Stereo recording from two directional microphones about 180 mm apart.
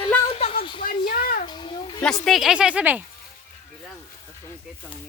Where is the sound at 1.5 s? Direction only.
25° left (ahead or behind).